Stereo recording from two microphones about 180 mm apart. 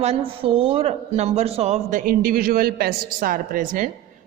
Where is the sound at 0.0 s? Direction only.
35° right (ahead or behind).